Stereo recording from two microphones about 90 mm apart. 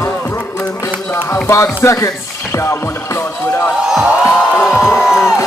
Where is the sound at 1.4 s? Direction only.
30° left (ahead or behind).